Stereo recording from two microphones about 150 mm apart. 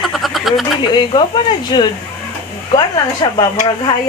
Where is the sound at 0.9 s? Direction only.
30° left (ahead or behind).